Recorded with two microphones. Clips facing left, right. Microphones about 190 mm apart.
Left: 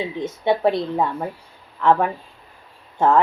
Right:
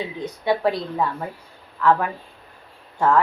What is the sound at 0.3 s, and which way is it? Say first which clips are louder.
Speech: left 2 dB; 25° left (ahead or behind).